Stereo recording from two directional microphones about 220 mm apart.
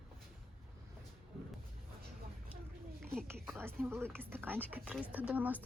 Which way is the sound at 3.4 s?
10° right (ahead or behind).